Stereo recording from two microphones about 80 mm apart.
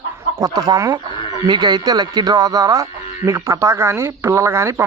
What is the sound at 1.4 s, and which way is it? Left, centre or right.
Speech, right.